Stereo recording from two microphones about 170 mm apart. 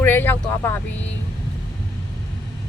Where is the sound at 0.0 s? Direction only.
10° left (ahead or behind).